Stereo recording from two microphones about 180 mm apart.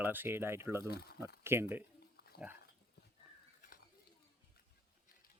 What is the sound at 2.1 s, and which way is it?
Pig, 60° left (ahead or behind).